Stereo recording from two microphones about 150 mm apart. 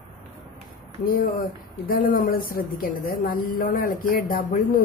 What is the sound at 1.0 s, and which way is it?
Speech, 75° left (ahead or behind).